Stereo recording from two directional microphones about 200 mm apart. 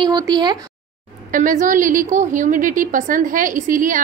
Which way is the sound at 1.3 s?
40° right (ahead or behind).